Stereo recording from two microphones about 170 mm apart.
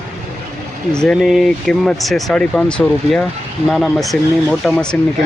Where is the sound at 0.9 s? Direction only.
5° left (ahead or behind).